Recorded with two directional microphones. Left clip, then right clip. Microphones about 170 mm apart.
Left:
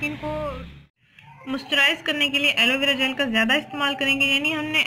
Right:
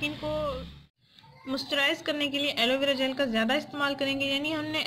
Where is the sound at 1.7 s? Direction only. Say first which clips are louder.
Left 8 dB; 85° right.